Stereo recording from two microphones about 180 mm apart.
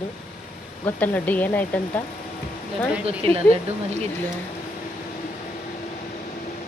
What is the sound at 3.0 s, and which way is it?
Speech, 35° right (ahead or behind).